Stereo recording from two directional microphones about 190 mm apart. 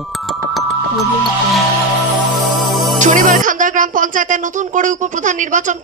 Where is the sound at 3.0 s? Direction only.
40° right (ahead or behind).